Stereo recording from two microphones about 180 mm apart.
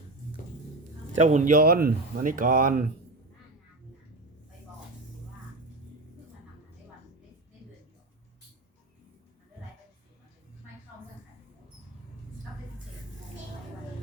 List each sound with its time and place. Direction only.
1.2 s speech: 40° right (ahead or behind)